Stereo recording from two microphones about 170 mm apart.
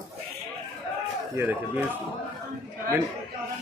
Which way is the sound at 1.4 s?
10° right (ahead or behind).